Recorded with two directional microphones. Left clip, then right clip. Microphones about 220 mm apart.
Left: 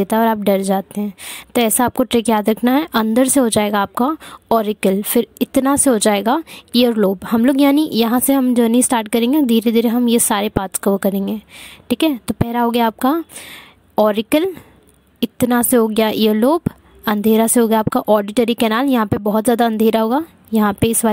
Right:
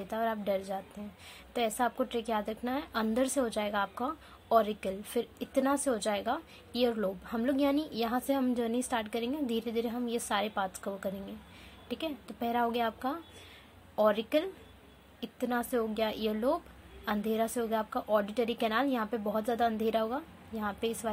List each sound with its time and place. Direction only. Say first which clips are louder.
0.0 s a woman's voice: left 17 dB; 50° left (ahead or behind)